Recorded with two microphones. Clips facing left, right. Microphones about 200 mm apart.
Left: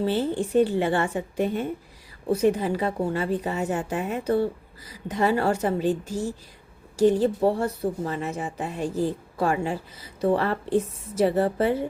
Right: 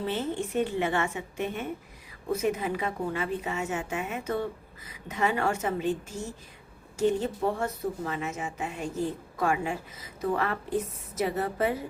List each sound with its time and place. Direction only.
0.0 s speech: 35° left (ahead or behind)